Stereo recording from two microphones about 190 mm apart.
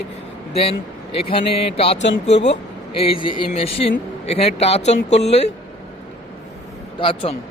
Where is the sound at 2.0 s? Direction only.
65° left (ahead or behind).